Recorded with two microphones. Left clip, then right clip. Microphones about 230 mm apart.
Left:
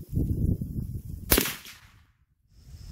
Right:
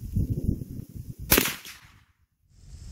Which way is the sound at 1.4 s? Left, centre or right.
Right.